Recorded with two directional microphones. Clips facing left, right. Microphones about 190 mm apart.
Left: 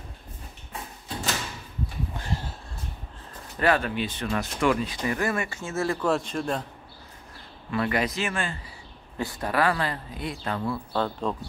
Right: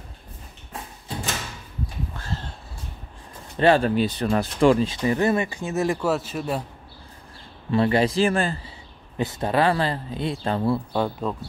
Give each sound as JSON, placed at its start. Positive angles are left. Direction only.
{"t": 2.1, "sound": "horse", "side_deg": 15}
{"t": 3.5, "sound": "speech", "side_deg": -30}
{"t": 6.0, "sound": "speech", "side_deg": -5}
{"t": 7.7, "sound": "speech", "side_deg": -30}
{"t": 9.1, "sound": "speech", "side_deg": -20}
{"t": 10.9, "sound": "speech", "side_deg": -10}